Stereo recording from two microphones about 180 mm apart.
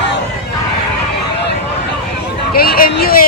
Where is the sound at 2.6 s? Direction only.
55° left (ahead or behind).